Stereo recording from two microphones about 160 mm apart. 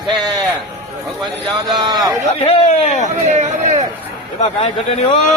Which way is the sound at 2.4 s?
45° left (ahead or behind).